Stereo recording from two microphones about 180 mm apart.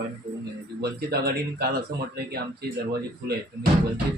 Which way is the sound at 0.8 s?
60° right (ahead or behind).